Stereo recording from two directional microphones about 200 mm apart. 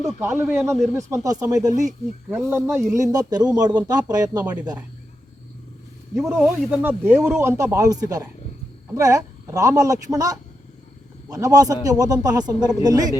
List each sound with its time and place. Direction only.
0.2 s a man's voice: 10° right (ahead or behind)
6.2 s a man's voice: 5° right (ahead or behind)